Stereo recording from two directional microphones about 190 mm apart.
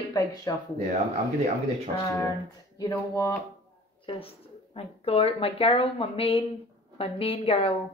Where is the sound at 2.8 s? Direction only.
20° left (ahead or behind).